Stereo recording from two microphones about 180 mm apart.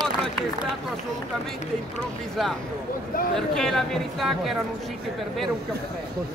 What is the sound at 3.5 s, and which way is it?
Speech, 5° left (ahead or behind).